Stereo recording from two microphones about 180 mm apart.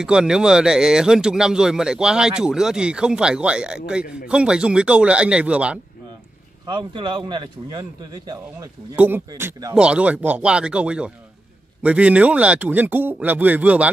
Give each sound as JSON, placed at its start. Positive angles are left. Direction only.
{"t": 0.0, "sound": "speech", "side_deg": -5}
{"t": 6.7, "sound": "a man's voice", "side_deg": -25}
{"t": 8.9, "sound": "a man's voice", "side_deg": -10}
{"t": 9.8, "sound": "speech", "side_deg": -5}